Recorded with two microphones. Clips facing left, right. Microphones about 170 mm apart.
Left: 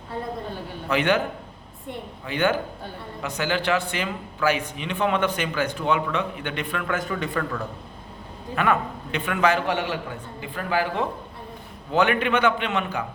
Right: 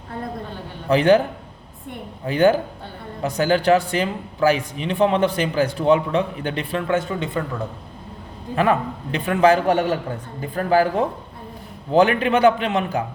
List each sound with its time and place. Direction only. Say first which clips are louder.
0.9 s a man's voice: right 7 dB; 35° right (ahead or behind)
2.2 s a man's voice: right 7 dB; 35° right (ahead or behind)
8.5 s a man's voice: right 4 dB; 35° right (ahead or behind)